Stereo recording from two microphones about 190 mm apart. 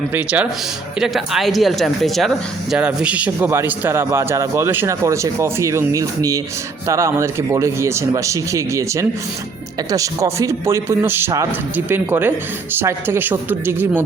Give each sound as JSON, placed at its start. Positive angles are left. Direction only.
{"t": 0.1, "sound": "speech", "side_deg": -10}